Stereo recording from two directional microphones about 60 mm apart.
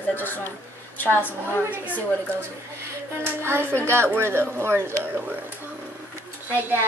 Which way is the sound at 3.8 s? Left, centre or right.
Right.